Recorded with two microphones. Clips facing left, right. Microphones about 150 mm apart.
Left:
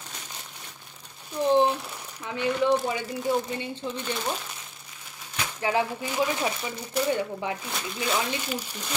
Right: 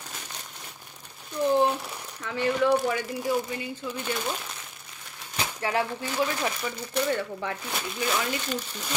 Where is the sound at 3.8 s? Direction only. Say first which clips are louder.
Left 2 dB; 35° left (ahead or behind).